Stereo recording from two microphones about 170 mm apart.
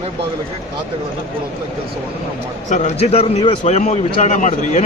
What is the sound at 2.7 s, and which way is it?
A man's voice, 45° left (ahead or behind).